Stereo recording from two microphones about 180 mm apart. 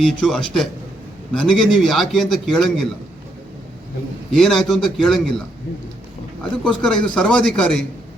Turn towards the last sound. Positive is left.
turn(degrees=5)  # may be behind; listen again after turning